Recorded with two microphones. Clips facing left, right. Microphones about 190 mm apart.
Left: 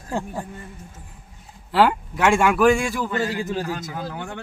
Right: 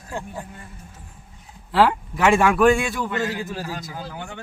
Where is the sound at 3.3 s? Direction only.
20° left (ahead or behind).